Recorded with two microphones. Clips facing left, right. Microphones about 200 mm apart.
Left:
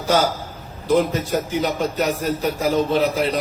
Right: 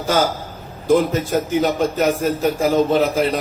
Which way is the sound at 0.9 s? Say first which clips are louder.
Right 2 dB; 45° right (ahead or behind).